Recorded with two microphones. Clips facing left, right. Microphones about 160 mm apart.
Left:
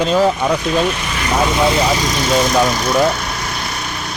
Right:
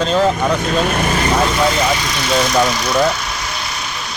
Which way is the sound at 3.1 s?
50° left (ahead or behind).